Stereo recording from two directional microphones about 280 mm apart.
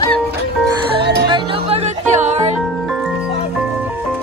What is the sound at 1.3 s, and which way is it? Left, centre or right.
Music, centre.